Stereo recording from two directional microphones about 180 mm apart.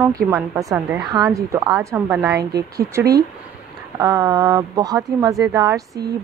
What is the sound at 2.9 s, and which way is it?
Speech, 15° right (ahead or behind).